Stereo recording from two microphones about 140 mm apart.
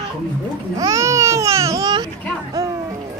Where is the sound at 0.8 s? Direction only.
25° right (ahead or behind).